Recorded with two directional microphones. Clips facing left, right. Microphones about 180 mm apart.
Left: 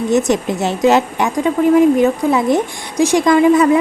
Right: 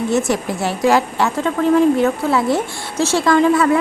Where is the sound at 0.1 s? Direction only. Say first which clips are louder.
Left 7 dB; 20° left (ahead or behind).